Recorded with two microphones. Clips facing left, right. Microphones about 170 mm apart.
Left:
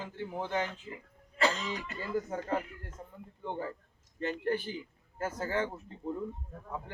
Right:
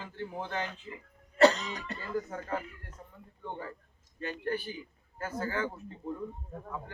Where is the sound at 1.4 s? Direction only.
35° right (ahead or behind).